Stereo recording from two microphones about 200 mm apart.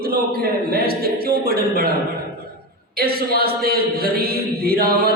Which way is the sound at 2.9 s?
50° right (ahead or behind).